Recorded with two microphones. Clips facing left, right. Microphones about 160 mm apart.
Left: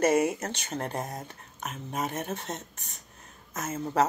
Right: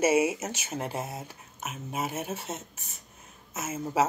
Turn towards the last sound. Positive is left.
turn(degrees=-5)  # may be behind; listen again after turning